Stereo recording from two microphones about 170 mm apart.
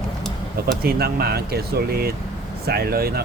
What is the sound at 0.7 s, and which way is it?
Speech, 65° right (ahead or behind).